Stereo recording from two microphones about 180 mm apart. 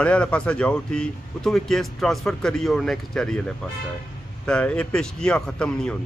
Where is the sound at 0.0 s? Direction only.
5° left (ahead or behind).